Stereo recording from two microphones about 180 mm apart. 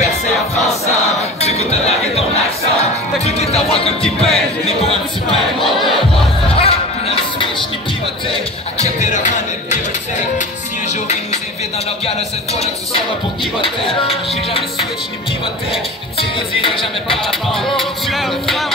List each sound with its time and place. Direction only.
1.4 s a sound: 35° left (ahead or behind)
3.3 s music: 35° left (ahead or behind)
5.7 s crowd: centre (ahead or behind)
6.6 s a sound: 30° left (ahead or behind)
8.3 s music: 40° left (ahead or behind)
12.5 s music: 30° left (ahead or behind)
16.6 s speech: 30° left (ahead or behind)
17.3 s music: centre (ahead or behind)